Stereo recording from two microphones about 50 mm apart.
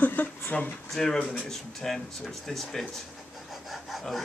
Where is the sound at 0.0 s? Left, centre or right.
Left.